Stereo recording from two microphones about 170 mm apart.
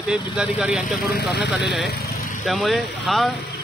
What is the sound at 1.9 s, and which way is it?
Vehicle, 65° left (ahead or behind).